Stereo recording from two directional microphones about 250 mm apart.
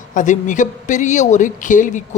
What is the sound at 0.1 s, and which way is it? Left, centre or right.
Speech, left.